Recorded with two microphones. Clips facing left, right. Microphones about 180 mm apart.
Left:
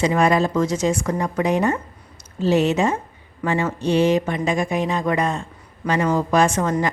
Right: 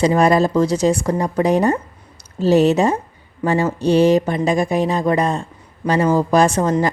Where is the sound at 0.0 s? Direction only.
35° right (ahead or behind).